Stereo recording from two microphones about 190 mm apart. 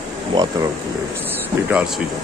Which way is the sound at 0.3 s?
20° right (ahead or behind).